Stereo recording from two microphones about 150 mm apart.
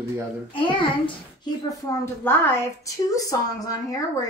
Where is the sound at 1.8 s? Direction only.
15° left (ahead or behind).